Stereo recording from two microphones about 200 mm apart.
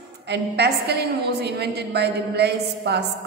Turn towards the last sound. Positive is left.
turn(degrees=-55)  # may be behind; listen again after turning